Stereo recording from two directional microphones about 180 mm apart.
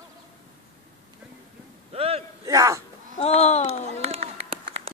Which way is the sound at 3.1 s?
35° left (ahead or behind).